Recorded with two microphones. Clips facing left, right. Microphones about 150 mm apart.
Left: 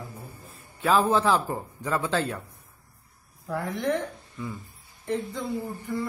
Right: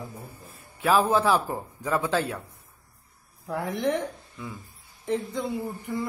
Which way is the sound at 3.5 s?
20° right (ahead or behind).